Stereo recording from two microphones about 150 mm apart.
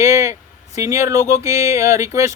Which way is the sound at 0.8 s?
20° right (ahead or behind).